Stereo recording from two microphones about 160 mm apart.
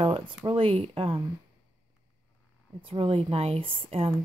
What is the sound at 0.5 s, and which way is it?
Speech, 35° right (ahead or behind).